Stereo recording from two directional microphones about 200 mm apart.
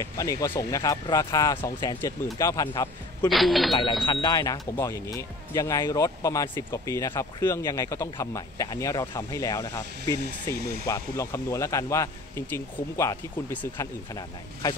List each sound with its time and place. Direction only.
0.0 s speech: 15° left (ahead or behind)
3.3 s speech: centre (ahead or behind)
4.0 s speech: 20° left (ahead or behind)